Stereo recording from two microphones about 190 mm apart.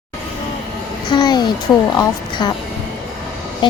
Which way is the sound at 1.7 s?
10° left (ahead or behind).